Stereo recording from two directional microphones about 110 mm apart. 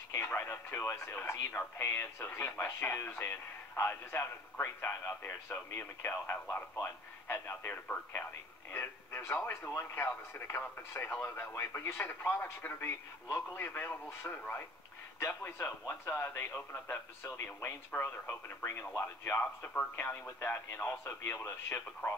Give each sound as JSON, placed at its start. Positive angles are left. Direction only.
{"t": 0.1, "sound": "speech", "side_deg": 20}